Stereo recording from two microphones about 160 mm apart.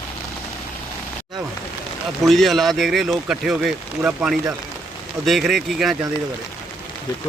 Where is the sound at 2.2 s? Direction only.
Centre (ahead or behind).